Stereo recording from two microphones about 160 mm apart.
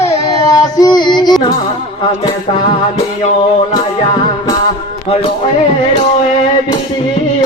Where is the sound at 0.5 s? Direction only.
25° left (ahead or behind).